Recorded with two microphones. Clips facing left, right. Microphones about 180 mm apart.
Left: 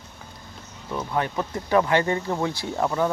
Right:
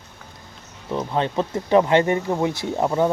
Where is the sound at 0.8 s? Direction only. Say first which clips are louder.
Right 3 dB; 25° right (ahead or behind).